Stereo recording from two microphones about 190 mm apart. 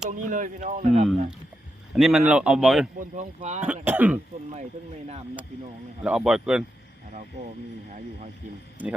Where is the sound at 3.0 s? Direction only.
40° right (ahead or behind).